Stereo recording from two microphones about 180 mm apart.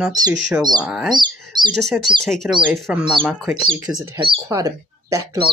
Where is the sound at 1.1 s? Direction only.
25° right (ahead or behind).